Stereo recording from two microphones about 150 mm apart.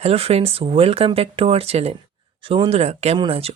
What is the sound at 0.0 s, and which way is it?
Speech, 40° right (ahead or behind).